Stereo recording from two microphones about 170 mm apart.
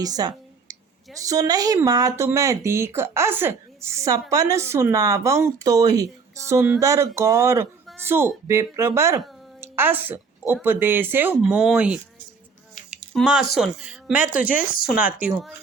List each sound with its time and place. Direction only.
0.0 s speech: 20° right (ahead or behind)
9.6 s a sound: 15° right (ahead or behind)
10.5 s speech: 10° right (ahead or behind)
13.1 s speech: 5° right (ahead or behind)
14.3 s speech: 55° left (ahead or behind)
14.8 s speech: 5° right (ahead or behind)